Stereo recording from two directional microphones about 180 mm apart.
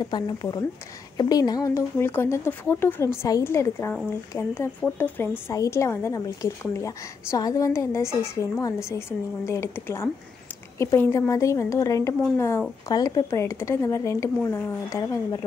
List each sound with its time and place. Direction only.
0.0 s a woman's voice: 25° left (ahead or behind)